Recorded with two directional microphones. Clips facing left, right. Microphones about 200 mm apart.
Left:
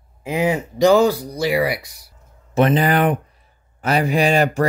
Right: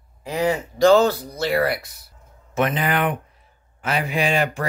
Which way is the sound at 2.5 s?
35° left (ahead or behind).